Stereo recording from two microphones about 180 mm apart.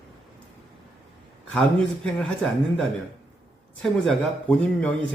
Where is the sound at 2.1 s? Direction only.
Centre (ahead or behind).